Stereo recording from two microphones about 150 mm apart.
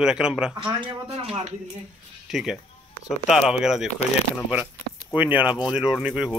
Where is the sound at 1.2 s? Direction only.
40° right (ahead or behind).